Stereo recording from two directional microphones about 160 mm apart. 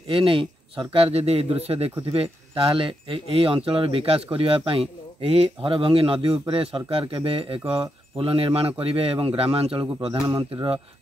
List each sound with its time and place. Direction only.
0.1 s speech: 35° right (ahead or behind)